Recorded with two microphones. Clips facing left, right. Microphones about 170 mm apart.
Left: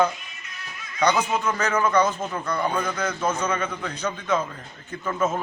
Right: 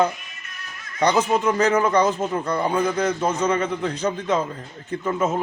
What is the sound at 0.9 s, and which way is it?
A man's voice, 35° right (ahead or behind).